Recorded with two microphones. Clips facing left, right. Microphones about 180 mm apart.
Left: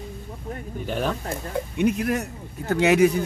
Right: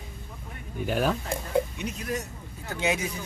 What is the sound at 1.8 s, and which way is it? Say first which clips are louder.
Speech: left 10 dB; 60° left (ahead or behind).